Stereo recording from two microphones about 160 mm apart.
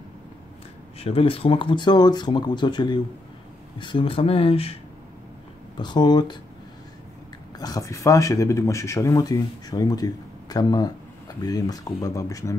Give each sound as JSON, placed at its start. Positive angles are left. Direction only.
{"t": 0.9, "sound": "speech", "side_deg": 35}
{"t": 5.8, "sound": "speech", "side_deg": 25}
{"t": 7.5, "sound": "speech", "side_deg": 25}